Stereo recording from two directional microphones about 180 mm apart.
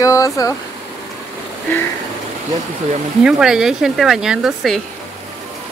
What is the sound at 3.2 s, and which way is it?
Speech, 5° right (ahead or behind).